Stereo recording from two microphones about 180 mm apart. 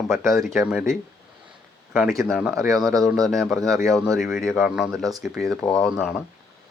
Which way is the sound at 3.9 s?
Centre (ahead or behind).